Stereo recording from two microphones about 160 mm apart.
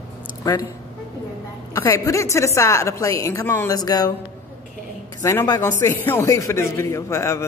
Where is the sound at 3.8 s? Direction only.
25° left (ahead or behind).